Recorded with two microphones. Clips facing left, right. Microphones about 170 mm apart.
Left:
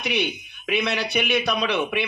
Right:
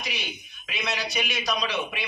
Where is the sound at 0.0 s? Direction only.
60° left (ahead or behind).